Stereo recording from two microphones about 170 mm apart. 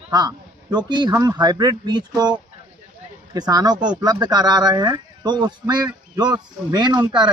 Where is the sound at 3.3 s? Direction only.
25° right (ahead or behind).